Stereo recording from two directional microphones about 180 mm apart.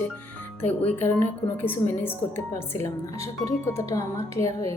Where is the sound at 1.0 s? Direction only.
10° left (ahead or behind).